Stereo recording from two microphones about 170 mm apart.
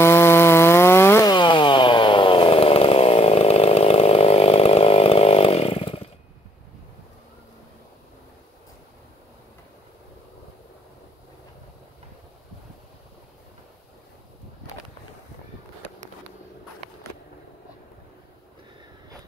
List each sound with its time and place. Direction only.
0.0 s chainsaw: 15° left (ahead or behind)
1.3 s chainsaw: 30° left (ahead or behind)